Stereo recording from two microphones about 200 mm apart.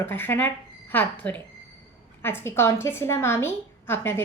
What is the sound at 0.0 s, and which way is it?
A woman's voice, 10° left (ahead or behind).